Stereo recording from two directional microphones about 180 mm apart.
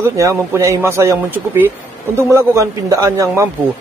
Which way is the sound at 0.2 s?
15° right (ahead or behind).